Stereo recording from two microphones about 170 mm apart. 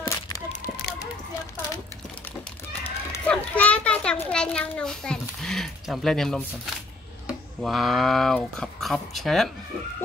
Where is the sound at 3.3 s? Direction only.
10° left (ahead or behind).